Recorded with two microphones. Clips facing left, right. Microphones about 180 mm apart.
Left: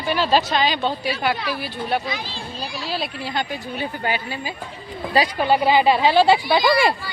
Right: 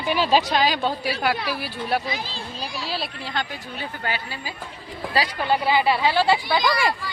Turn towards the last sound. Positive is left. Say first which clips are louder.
# left 4 dB
turn(degrees=20)  # may be behind; listen again after turning